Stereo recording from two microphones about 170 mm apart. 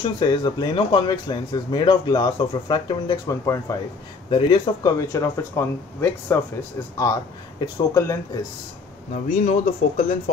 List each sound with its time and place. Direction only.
0.0 s speech: 25° left (ahead or behind)
7.6 s speech: 20° left (ahead or behind)
9.1 s speech: 50° left (ahead or behind)